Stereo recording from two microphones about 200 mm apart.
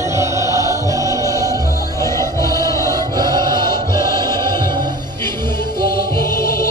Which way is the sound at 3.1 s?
20° right (ahead or behind).